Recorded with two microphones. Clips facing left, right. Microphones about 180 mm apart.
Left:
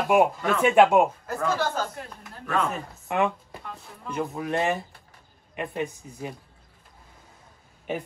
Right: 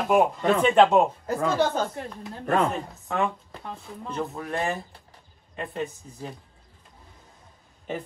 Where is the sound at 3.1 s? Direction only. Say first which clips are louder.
Left 3 dB; 15° left (ahead or behind).